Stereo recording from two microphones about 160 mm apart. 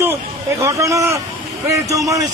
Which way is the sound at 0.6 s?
20° right (ahead or behind).